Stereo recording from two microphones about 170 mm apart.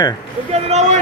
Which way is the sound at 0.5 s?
40° right (ahead or behind).